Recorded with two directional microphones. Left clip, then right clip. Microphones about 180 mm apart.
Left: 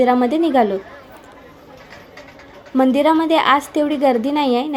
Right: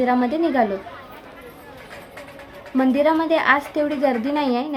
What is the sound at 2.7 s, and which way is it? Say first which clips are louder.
A woman's voice: left 3 dB; 15° left (ahead or behind).